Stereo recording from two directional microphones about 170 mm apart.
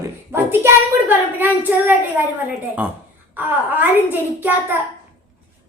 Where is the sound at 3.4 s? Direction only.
10° right (ahead or behind).